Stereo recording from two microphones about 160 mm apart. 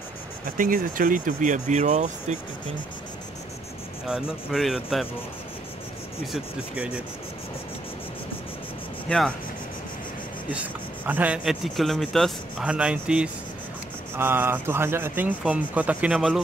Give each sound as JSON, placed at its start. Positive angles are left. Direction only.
{"t": 0.6, "sound": "speech", "side_deg": -60}
{"t": 4.1, "sound": "speech", "side_deg": 0}
{"t": 6.3, "sound": "a man's voice", "side_deg": -10}
{"t": 10.5, "sound": "a man's voice", "side_deg": -10}